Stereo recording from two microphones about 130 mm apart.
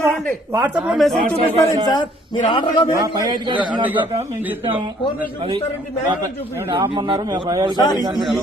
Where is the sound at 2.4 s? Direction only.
35° left (ahead or behind).